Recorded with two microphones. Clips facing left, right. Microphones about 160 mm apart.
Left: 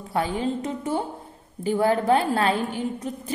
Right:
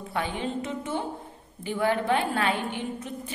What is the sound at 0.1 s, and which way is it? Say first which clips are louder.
A woman's voice: left 5 dB; 40° left (ahead or behind).